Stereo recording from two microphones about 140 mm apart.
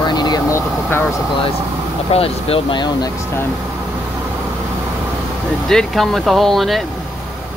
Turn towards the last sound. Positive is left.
turn(degrees=0)  # may be behind; listen again after turning